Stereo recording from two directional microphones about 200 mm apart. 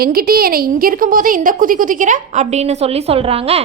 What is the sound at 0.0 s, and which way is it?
A woman's voice, 50° right (ahead or behind).